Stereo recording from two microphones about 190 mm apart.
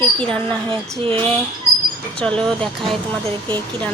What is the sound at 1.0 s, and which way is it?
Speech, 30° right (ahead or behind).